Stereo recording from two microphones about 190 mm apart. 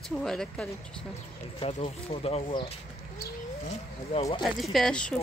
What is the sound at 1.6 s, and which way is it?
Speech, 30° left (ahead or behind).